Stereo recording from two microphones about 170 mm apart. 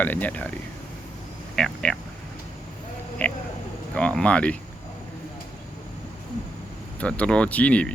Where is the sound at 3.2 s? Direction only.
10° left (ahead or behind).